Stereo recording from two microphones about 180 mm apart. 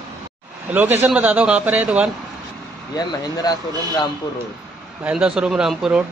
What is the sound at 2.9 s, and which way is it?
Speech, 20° left (ahead or behind).